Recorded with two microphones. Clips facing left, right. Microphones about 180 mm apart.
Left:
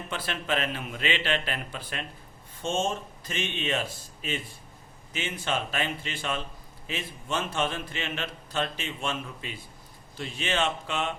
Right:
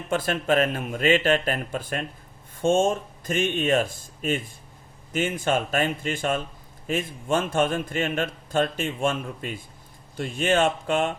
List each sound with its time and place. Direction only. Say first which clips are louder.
0.1 s a man's voice: right 8 dB; 45° right (ahead or behind)